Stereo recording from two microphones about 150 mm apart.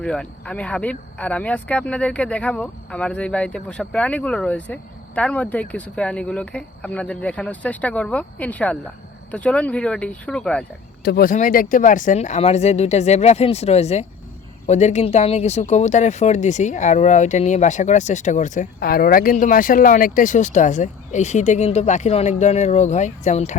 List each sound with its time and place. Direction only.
0.0 s speech: 5° left (ahead or behind)
11.0 s speech: 80° left; by 18.7 s 55° left (ahead or behind)
18.8 s speech: 75° left (ahead or behind); by 23.6 s 50° left (ahead or behind)